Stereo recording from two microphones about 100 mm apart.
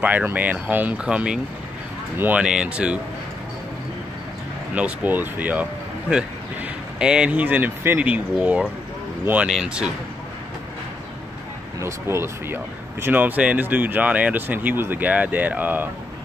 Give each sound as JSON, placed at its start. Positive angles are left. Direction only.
{"t": 0.0, "sound": "speech", "side_deg": -15}
{"t": 4.7, "sound": "speech", "side_deg": -15}
{"t": 9.5, "sound": "speech", "side_deg": -5}
{"t": 11.8, "sound": "speech", "side_deg": -25}